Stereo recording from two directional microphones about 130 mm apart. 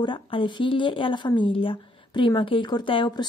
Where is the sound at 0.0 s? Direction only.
40° left (ahead or behind).